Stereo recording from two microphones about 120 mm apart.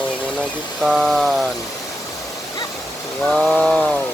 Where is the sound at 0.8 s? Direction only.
5° right (ahead or behind).